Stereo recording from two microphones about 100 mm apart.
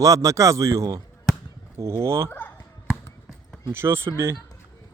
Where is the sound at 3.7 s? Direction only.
25° right (ahead or behind).